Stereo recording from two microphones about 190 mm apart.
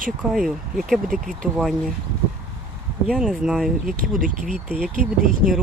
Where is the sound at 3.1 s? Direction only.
5° right (ahead or behind).